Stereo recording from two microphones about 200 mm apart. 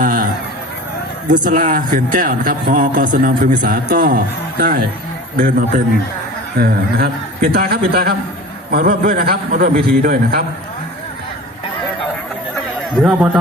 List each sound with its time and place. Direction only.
0.0 s a sound: 45° right (ahead or behind)
1.3 s a man's voice: 40° right (ahead or behind)
12.9 s a man's voice: 5° right (ahead or behind)